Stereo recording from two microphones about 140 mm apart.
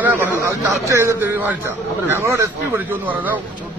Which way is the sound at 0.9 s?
20° right (ahead or behind).